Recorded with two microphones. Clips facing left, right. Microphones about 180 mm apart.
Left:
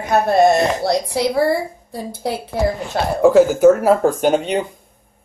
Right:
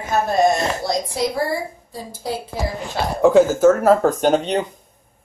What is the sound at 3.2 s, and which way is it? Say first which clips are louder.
Speech: left 2 dB; 5° left (ahead or behind).